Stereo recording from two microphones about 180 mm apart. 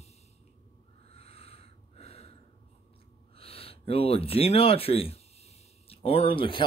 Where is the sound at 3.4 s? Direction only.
30° left (ahead or behind).